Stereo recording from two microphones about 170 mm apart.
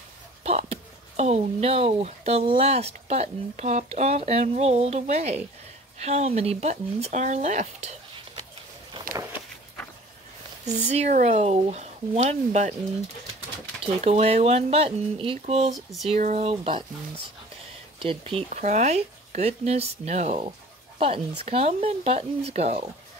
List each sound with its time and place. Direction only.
0.4 s speech: 40° right (ahead or behind)
10.9 s speech: 40° right (ahead or behind)
13.8 s speech: 40° right (ahead or behind)
15.7 s a sound: centre (ahead or behind)
16.2 s speech: 45° right (ahead or behind)
17.9 s speech: 35° right (ahead or behind)
18.5 s speech: 45° right (ahead or behind)
21.5 s speech: 35° right (ahead or behind)